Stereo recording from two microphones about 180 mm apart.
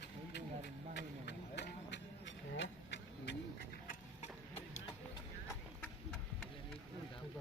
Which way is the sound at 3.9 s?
40° left (ahead or behind).